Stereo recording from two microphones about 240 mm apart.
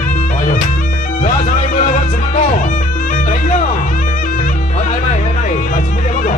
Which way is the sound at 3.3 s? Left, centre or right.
Left.